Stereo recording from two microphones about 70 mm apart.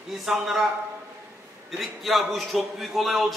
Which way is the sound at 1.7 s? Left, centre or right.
Centre.